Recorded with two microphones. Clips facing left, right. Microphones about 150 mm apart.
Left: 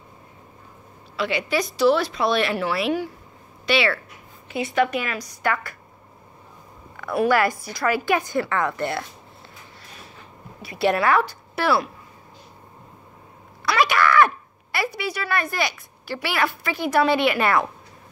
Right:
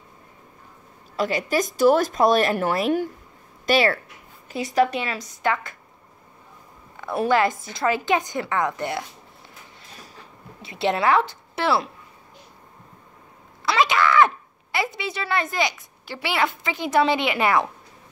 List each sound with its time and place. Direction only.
1.1 s a woman's voice: 40° right (ahead or behind); by 5.8 s 20° right (ahead or behind)
7.0 s a woman's voice: 20° right (ahead or behind)
10.6 s a woman's voice: 20° right (ahead or behind)
13.7 s speech: 20° right (ahead or behind)